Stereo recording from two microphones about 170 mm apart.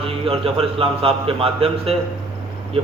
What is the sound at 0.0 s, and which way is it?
A man's voice, 35° right (ahead or behind).